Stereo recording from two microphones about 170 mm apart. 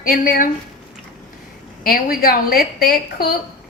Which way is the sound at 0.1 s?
55° left (ahead or behind).